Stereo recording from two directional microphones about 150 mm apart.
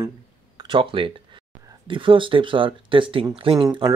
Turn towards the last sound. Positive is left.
turn(degrees=-30)  # may be behind; listen again after turning